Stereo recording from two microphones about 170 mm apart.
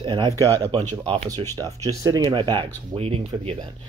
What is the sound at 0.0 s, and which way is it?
Speech, 25° right (ahead or behind).